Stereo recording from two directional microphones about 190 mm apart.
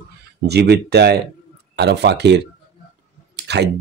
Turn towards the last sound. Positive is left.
turn(degrees=-60)  # may be behind; listen again after turning